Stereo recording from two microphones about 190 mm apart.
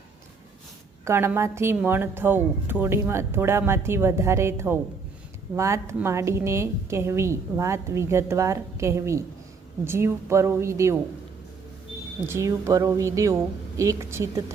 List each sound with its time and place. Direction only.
1.0 s a woman's voice: 15° right (ahead or behind)
12.2 s a woman's voice: 15° right (ahead or behind)